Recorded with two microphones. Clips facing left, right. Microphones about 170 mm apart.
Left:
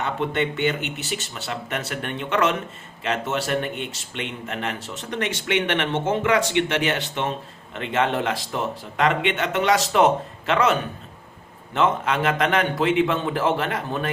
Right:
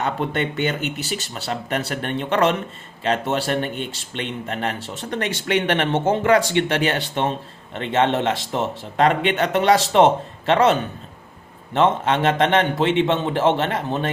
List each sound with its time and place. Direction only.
0.0 s a man's voice: 40° right (ahead or behind)